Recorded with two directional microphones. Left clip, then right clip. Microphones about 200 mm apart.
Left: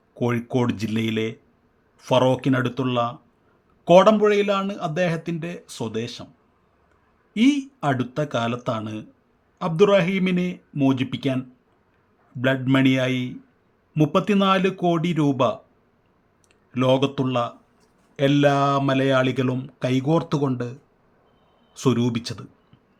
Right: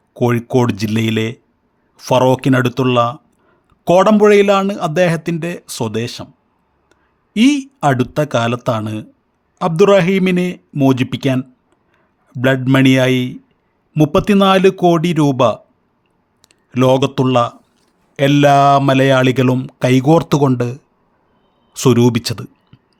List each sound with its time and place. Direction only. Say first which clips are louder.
0.1 s speech: right 9 dB; 30° right (ahead or behind)
7.3 s speech: right 7 dB; 35° right (ahead or behind)